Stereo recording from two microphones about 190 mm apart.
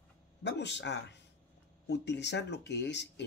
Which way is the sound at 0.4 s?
65° left (ahead or behind).